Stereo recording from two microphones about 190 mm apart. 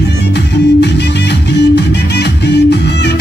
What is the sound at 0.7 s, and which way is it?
Music, 60° left (ahead or behind).